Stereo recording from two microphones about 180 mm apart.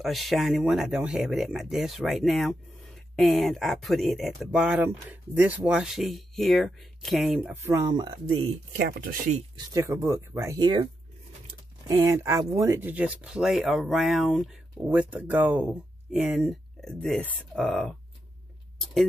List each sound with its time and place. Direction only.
0.0 s speech: centre (ahead or behind)
7.6 s speech: 20° right (ahead or behind)
8.7 s speech: 55° right (ahead or behind)
9.8 s speech: 15° right (ahead or behind)
11.9 s speech: 15° right (ahead or behind); by 17.9 s centre (ahead or behind)